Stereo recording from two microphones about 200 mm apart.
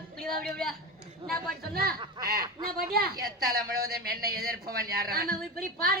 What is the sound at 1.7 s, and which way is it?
Speech, 50° right (ahead or behind).